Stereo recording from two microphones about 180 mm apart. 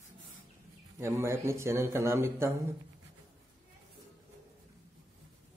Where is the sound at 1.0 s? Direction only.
15° right (ahead or behind).